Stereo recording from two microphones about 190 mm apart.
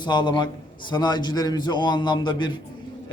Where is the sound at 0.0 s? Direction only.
25° left (ahead or behind).